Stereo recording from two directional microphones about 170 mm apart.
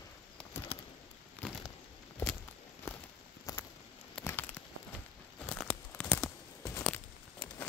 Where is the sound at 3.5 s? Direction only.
20° left (ahead or behind).